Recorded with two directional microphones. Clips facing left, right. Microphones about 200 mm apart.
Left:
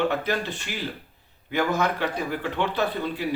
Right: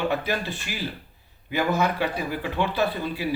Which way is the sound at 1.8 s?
10° right (ahead or behind).